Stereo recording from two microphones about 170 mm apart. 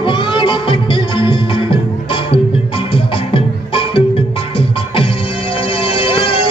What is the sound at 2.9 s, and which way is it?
Music, 30° left (ahead or behind).